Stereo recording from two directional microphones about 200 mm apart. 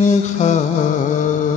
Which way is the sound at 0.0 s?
35° left (ahead or behind).